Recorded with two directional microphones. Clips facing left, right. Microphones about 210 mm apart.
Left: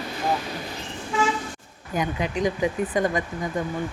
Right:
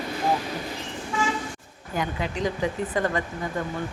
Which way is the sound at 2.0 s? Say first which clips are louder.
Left 3 dB; 15° left (ahead or behind).